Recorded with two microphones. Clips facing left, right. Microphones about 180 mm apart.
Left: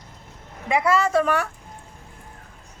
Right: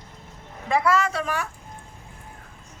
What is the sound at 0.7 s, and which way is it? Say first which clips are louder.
Speech: left 1 dB; 25° left (ahead or behind).